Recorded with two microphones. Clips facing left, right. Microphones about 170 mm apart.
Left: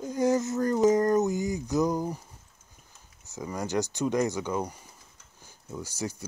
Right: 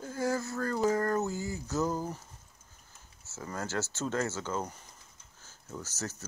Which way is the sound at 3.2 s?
15° left (ahead or behind).